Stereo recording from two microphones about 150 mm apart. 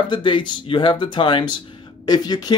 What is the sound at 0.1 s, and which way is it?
Speech, 30° left (ahead or behind).